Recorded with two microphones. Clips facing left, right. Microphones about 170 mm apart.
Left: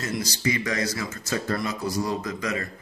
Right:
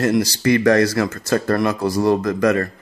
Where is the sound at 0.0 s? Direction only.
65° right (ahead or behind).